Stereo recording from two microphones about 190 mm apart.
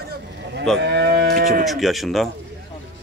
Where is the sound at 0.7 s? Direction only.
65° right (ahead or behind).